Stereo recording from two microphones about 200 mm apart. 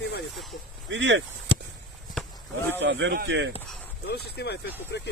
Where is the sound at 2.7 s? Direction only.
65° right (ahead or behind).